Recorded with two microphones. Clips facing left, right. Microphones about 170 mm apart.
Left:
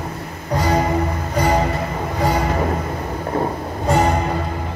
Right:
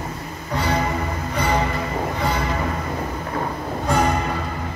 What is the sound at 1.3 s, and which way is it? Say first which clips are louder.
Music: left 4 dB; 40° left (ahead or behind).